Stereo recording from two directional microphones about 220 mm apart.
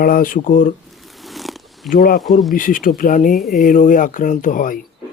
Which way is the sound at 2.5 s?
40° left (ahead or behind).